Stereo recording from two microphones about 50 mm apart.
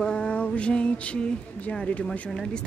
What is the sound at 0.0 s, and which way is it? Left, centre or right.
Speech, centre.